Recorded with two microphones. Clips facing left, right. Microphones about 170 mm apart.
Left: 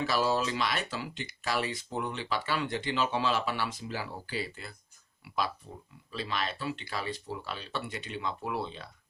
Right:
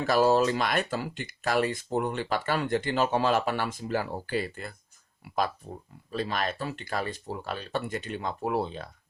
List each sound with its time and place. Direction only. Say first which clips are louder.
0.0 s speech: right 6 dB; 45° right (ahead or behind)
5.2 s a sound: right 4 dB; 50° right (ahead or behind)
6.1 s speech: right 5 dB; 45° right (ahead or behind)